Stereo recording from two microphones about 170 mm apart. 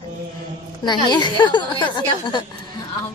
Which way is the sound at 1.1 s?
25° left (ahead or behind).